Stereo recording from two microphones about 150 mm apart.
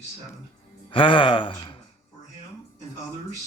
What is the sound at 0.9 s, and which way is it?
Speech, 35° left (ahead or behind).